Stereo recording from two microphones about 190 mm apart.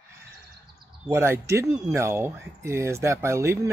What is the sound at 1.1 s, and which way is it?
Speech, 15° right (ahead or behind).